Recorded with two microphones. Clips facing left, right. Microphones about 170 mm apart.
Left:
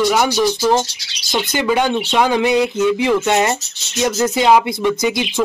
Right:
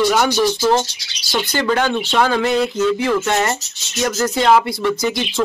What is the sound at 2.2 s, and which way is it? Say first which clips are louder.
Speech: left 2 dB; 15° left (ahead or behind).